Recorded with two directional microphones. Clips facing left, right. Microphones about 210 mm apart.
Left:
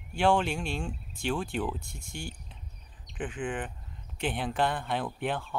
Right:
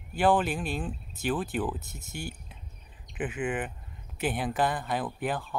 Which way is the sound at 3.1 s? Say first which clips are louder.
Right 3 dB; 5° right (ahead or behind).